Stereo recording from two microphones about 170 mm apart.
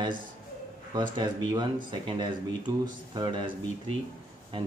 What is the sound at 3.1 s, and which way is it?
Speech, 30° right (ahead or behind).